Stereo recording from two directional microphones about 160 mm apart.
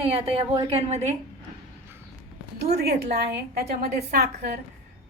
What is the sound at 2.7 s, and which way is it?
Speech, 80° right.